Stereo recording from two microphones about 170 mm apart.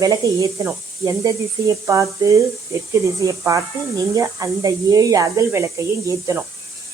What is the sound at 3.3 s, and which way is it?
Speech, 20° right (ahead or behind).